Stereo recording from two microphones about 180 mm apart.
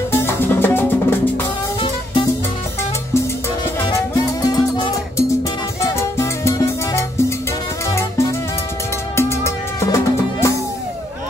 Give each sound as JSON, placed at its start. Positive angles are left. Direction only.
{"t": 0.1, "sound": "music", "side_deg": 15}
{"t": 4.5, "sound": "music", "side_deg": 25}